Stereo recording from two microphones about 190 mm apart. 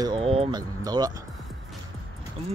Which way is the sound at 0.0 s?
25° right (ahead or behind).